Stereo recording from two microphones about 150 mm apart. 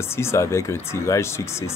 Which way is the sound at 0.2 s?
15° left (ahead or behind).